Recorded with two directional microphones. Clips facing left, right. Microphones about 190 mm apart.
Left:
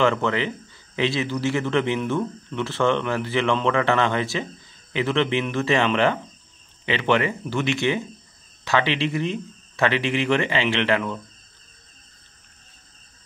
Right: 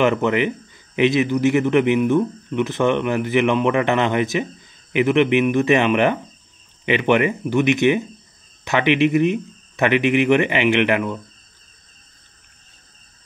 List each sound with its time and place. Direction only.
0.0 s speech: 15° right (ahead or behind)